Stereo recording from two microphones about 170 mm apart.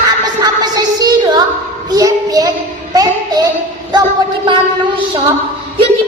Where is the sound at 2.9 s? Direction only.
20° right (ahead or behind).